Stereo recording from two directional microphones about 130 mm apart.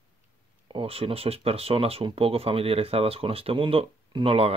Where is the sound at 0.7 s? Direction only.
45° right (ahead or behind).